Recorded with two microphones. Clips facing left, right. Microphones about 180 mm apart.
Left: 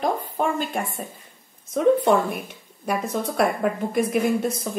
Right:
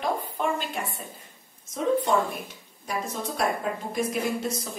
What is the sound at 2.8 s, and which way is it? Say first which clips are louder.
A woman's voice: left 6 dB; 60° left (ahead or behind).